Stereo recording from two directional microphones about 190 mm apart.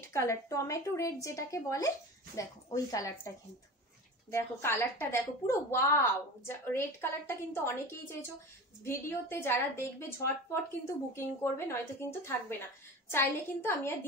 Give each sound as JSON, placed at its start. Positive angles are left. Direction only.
{"t": 0.0, "sound": "a woman's voice", "side_deg": 15}